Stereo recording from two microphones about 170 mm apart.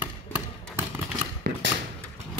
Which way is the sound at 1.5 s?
70° right (ahead or behind).